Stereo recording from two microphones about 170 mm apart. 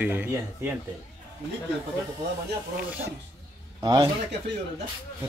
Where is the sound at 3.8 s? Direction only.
25° right (ahead or behind).